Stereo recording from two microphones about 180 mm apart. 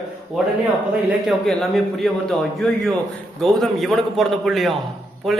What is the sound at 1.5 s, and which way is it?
A man's voice, centre (ahead or behind).